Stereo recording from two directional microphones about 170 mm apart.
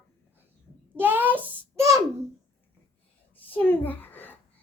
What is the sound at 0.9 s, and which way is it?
A child's voice, 10° right (ahead or behind).